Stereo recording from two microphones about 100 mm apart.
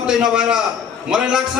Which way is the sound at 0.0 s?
5° right (ahead or behind).